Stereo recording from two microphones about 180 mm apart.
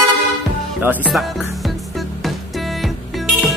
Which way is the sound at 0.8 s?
10° right (ahead or behind).